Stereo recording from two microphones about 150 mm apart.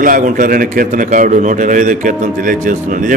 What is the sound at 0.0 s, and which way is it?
A man's voice, 65° right (ahead or behind).